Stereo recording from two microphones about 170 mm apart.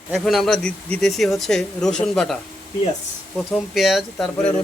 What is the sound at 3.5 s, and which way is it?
A man's voice, centre (ahead or behind).